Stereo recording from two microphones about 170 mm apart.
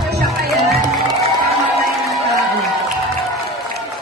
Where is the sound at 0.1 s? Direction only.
70° right (ahead or behind).